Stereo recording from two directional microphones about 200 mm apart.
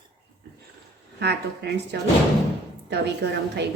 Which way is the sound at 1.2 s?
55° right (ahead or behind).